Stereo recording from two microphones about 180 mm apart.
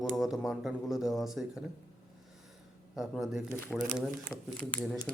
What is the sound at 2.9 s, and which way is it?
Speech, centre (ahead or behind).